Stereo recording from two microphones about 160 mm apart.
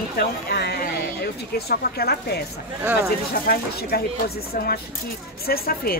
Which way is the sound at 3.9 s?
75° left (ahead or behind).